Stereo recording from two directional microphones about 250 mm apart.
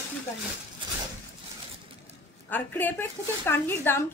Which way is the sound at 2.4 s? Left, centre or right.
Centre.